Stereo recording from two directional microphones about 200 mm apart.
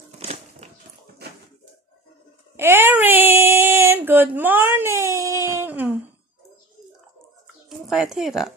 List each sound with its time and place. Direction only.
0.2 s crushing: 30° right (ahead or behind)
2.5 s a sound: 10° right (ahead or behind)
7.8 s speech: centre (ahead or behind)